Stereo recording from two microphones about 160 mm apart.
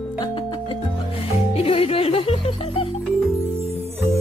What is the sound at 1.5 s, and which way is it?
Music, 35° left (ahead or behind).